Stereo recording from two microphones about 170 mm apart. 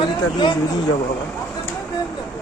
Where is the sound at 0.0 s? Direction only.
25° left (ahead or behind).